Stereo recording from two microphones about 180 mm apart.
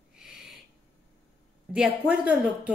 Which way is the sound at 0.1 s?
5° right (ahead or behind).